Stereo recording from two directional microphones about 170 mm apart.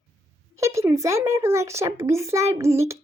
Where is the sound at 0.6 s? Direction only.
15° right (ahead or behind).